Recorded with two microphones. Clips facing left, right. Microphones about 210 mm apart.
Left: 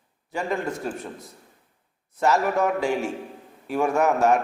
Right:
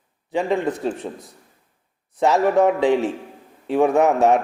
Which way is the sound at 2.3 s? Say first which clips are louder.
Right 5 dB; 30° right (ahead or behind).